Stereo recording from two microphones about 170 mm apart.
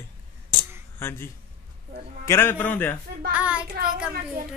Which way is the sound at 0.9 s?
15° left (ahead or behind).